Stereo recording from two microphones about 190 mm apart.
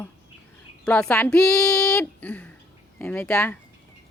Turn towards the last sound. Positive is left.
turn(degrees=10)  # may be behind; listen again after turning